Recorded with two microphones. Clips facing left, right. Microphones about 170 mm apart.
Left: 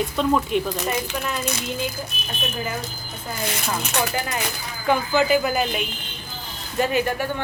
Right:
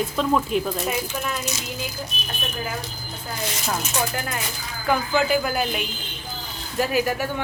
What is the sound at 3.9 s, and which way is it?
Speech, 70° left (ahead or behind).